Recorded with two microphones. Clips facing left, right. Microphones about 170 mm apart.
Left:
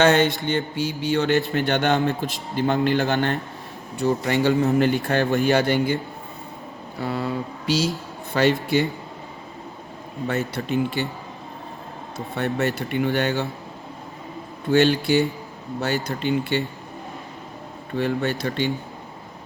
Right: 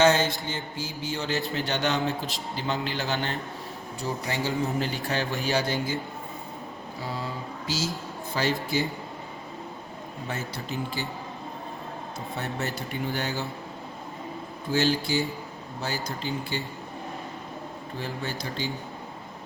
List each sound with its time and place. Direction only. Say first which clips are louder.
0.0 s speech: left 4 dB; 60° left (ahead or behind)
1.5 s speech: left 6 dB; 55° left (ahead or behind)
7.0 s speech: left 9 dB; 65° left (ahead or behind)
10.2 s speech: left 9 dB; 65° left (ahead or behind)
12.4 s speech: left 9 dB; 65° left (ahead or behind)
14.7 s speech: left 7 dB; 65° left (ahead or behind)
17.9 s speech: left 11 dB; 65° left (ahead or behind)